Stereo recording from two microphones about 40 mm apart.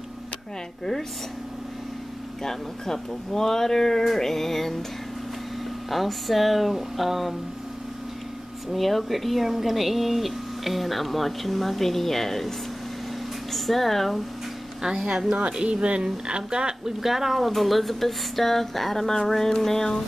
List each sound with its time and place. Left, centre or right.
2.4 s speech: centre
5.9 s speech: centre
8.7 s speech: centre
14.8 s speech: centre
15.0 s speech: right
17.0 s speech: centre